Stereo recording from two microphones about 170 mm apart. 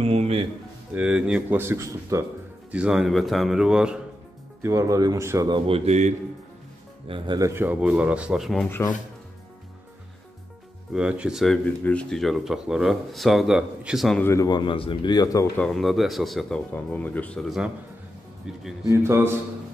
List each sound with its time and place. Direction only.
0.0 s speech: 35° right (ahead or behind)
0.9 s speech: 5° right (ahead or behind)
2.7 s speech: 5° right (ahead or behind)
4.6 s speech: 15° right (ahead or behind)
5.5 s speech: 35° right (ahead or behind)
7.1 s speech: 30° right (ahead or behind); by 8.6 s centre (ahead or behind)
10.9 s speech: 5° right (ahead or behind)
14.2 s speech: 20° left (ahead or behind)
15.5 s speech: 5° left (ahead or behind)
18.9 s speech: 15° right (ahead or behind)